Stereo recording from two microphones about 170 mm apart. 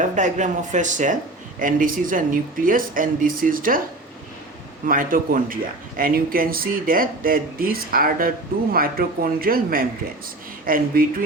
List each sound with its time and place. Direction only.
0.0 s speech: 45° right (ahead or behind)
4.9 s speech: 55° right (ahead or behind)